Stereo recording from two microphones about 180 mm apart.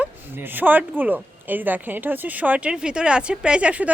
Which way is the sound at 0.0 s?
10° right (ahead or behind).